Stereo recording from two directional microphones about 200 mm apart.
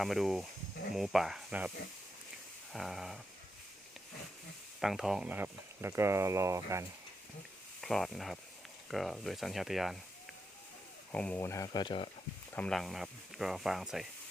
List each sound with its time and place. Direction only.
0.0 s speech: centre (ahead or behind)
2.7 s speech: centre (ahead or behind)
4.8 s speech: centre (ahead or behind)
7.8 s speech: centre (ahead or behind)
11.1 s speech: 5° left (ahead or behind); by 12.1 s 25° left (ahead or behind)
12.5 s speech: 5° left (ahead or behind)